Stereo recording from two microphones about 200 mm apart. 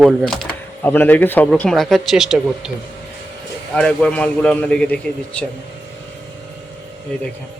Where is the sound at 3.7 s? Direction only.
5° left (ahead or behind).